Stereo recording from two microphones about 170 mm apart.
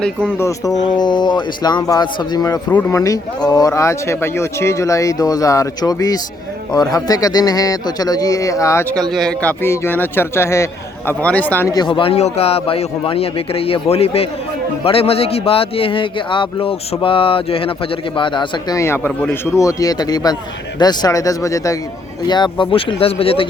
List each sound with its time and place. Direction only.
0.0 s speech: 5° left (ahead or behind); by 2.6 s 25° left (ahead or behind)
2.6 s a man's voice: 10° left (ahead or behind)
3.0 s a man's voice: 20° left (ahead or behind)
11.7 s speech: 25° left (ahead or behind)